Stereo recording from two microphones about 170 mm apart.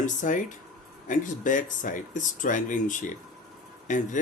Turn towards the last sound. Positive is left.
turn(degrees=50)  # may be behind; listen again after turning